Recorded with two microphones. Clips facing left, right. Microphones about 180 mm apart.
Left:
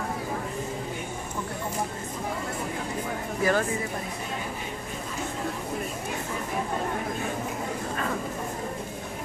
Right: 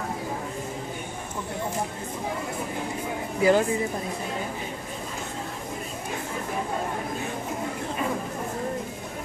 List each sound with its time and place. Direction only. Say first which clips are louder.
3.3 s speech: right 5 dB; 15° right (ahead or behind)